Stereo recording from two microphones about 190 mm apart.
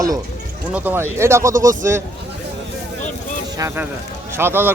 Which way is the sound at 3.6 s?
15° right (ahead or behind).